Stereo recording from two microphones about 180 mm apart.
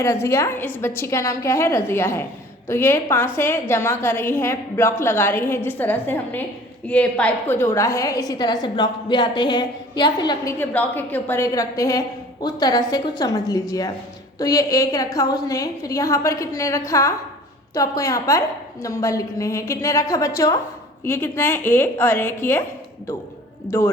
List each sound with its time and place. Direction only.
0.0 s a woman's voice: 15° left (ahead or behind)
10.6 s a woman's voice: 10° left (ahead or behind)